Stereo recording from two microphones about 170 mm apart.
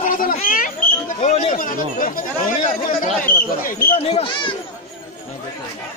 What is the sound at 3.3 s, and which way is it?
Speech, 55° left (ahead or behind).